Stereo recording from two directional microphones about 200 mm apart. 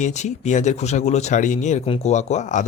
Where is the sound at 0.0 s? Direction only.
35° left (ahead or behind).